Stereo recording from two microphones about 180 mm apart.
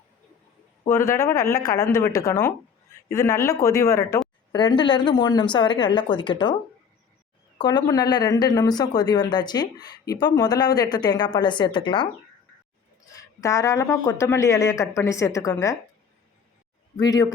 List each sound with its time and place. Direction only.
0.9 s speech: 15° left (ahead or behind)
7.6 s speech: 25° left (ahead or behind)
13.1 s speech: 15° left (ahead or behind)
17.0 s speech: 20° left (ahead or behind)